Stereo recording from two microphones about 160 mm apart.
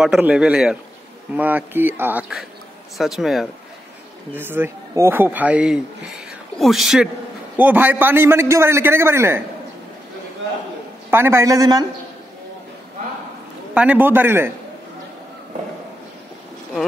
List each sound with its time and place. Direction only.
0.0 s a man's voice: 5° right (ahead or behind)
4.4 s a woman's voice: 15° right (ahead or behind)
11.1 s a man's voice: 15° right (ahead or behind)
13.7 s a woman's voice: 10° right (ahead or behind)